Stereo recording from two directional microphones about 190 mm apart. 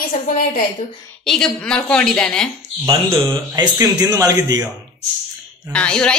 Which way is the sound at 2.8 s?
15° right (ahead or behind).